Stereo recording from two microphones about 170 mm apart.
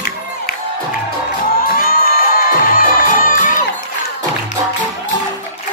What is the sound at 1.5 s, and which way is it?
Music, 60° left (ahead or behind).